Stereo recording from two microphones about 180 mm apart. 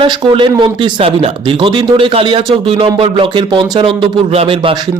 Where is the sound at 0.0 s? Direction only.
25° right (ahead or behind).